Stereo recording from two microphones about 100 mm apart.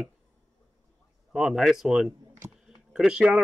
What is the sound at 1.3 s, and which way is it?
Speech, 5° right (ahead or behind).